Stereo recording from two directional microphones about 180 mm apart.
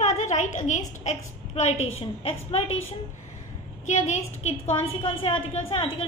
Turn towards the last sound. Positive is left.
turn(degrees=35)  # may be behind; listen again after turning